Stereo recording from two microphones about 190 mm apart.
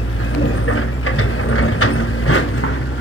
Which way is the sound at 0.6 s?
90° left.